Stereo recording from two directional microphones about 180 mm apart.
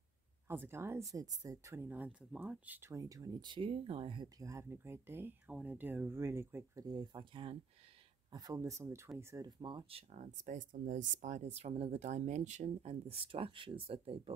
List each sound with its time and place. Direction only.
0.5 s speech: 15° right (ahead or behind); by 14.3 s 30° right (ahead or behind)